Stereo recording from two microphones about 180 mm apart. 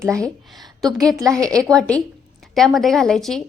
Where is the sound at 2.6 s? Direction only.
Centre (ahead or behind).